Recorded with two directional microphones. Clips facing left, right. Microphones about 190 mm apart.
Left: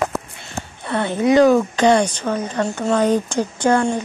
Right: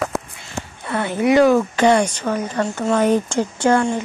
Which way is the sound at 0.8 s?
25° left (ahead or behind).